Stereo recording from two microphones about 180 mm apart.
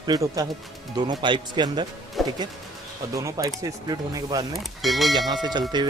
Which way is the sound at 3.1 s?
20° right (ahead or behind).